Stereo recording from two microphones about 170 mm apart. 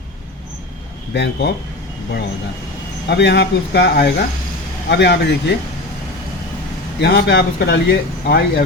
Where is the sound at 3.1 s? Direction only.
85° left.